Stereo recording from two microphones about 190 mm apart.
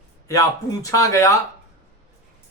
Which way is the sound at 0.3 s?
15° left (ahead or behind).